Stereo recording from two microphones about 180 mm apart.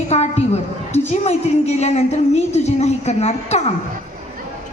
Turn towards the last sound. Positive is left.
turn(degrees=35)  # may be behind; listen again after turning